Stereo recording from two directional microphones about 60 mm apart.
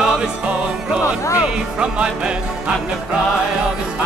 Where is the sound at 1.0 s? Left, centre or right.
Left.